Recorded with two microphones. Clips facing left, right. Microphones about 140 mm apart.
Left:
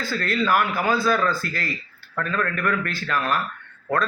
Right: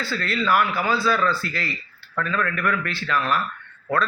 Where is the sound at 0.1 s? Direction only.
45° left (ahead or behind).